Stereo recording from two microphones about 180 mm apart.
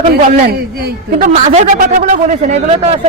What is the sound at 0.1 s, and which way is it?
Speech, 60° right (ahead or behind).